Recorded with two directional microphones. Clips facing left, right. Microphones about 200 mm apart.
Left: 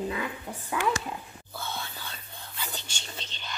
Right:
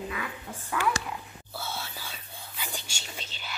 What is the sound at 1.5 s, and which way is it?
Whispering, 5° right (ahead or behind).